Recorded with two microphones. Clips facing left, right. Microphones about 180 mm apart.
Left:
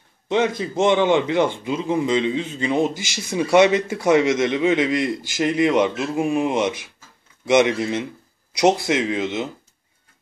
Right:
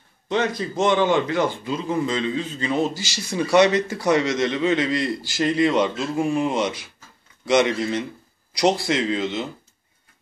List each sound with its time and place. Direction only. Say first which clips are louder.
0.6 s a man's voice: left 2 dB; 20° left (ahead or behind)